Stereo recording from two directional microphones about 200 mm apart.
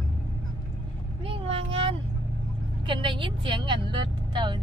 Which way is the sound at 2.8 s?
25° right (ahead or behind).